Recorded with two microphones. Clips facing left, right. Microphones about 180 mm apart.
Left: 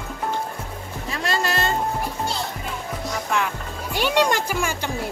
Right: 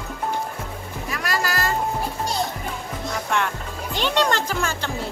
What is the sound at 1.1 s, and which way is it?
Music, 25° left (ahead or behind).